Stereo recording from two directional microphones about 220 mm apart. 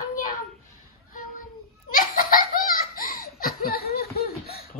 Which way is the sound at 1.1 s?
40° left (ahead or behind).